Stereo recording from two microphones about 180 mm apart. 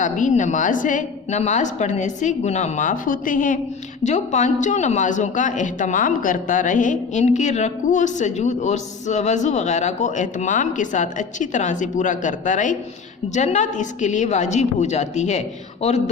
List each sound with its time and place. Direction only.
0.0 s a man's voice: 45° left (ahead or behind)